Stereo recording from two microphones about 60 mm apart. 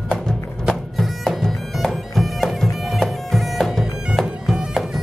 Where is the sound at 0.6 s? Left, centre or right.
Centre.